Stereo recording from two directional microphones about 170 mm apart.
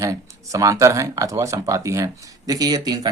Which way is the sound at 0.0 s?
20° right (ahead or behind).